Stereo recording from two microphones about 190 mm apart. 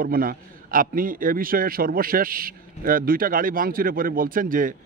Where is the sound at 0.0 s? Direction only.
50° right (ahead or behind).